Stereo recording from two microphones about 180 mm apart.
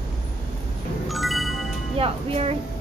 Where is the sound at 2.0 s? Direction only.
35° right (ahead or behind).